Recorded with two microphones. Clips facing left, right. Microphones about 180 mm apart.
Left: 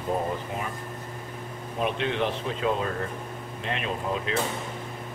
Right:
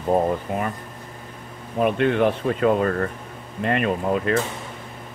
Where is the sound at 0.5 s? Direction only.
55° right (ahead or behind).